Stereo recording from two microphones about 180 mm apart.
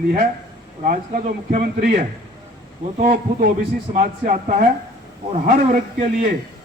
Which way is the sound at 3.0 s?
55° right (ahead or behind).